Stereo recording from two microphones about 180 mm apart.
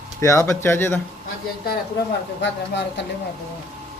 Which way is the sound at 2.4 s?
75° left (ahead or behind).